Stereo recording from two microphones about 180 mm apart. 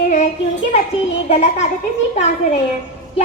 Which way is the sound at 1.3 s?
35° left (ahead or behind).